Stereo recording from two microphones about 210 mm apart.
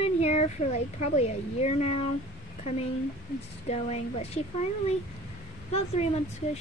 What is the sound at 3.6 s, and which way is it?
Speech, 30° left (ahead or behind).